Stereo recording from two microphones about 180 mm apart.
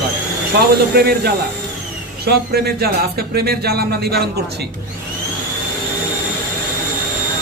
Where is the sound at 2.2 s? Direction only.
60° right (ahead or behind).